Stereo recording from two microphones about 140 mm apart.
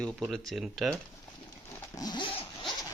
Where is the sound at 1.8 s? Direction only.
25° left (ahead or behind).